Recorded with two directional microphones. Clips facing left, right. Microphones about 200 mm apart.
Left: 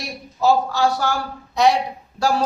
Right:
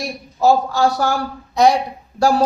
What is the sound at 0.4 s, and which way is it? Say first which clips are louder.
Speech: right 3 dB; 45° right (ahead or behind).